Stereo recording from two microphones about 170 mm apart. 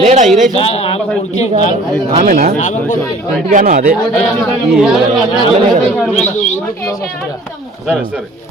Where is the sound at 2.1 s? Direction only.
45° right (ahead or behind).